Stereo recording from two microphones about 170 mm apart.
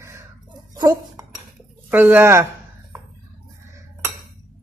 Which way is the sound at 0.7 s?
25° right (ahead or behind).